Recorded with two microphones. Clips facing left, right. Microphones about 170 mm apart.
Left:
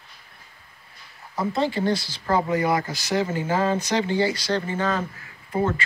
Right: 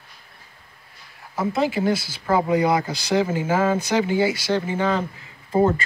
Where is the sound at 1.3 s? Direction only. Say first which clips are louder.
Right 2 dB; centre (ahead or behind); by 5.6 s 20° right (ahead or behind).